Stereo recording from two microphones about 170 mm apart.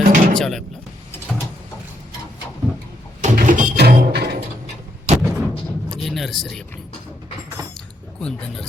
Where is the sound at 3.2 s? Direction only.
45° right (ahead or behind).